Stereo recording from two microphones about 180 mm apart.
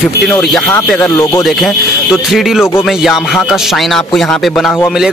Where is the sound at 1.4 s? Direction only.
Centre (ahead or behind).